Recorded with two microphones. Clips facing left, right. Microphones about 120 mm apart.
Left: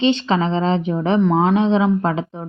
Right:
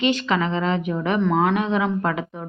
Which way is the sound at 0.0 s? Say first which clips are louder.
Left 4 dB; 30° left (ahead or behind).